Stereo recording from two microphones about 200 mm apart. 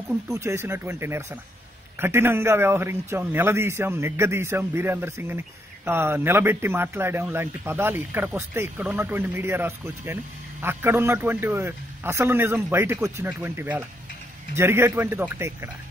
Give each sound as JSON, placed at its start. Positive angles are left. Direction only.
{"t": 0.3, "sound": "a man's voice", "side_deg": -15}